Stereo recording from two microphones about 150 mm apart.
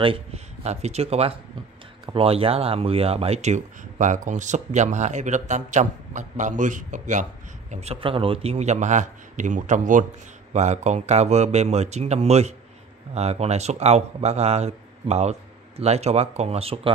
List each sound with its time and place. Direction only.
0.0 s speech: 40° right (ahead or behind); by 7.2 s 55° right (ahead or behind)
7.7 s speech: 45° right (ahead or behind)